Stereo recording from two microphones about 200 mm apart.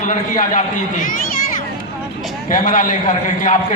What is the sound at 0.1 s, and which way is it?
Speech, 40° left (ahead or behind).